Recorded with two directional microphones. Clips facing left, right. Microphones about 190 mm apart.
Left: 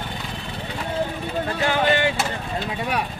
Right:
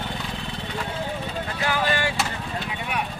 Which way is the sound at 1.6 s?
25° left (ahead or behind).